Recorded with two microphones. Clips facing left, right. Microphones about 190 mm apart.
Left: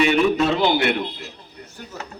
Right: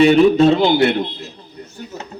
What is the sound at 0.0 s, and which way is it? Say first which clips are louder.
Speech: right 7 dB; 35° right (ahead or behind).